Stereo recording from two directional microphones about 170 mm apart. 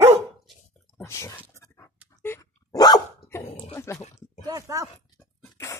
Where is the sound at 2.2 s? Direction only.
20° left (ahead or behind).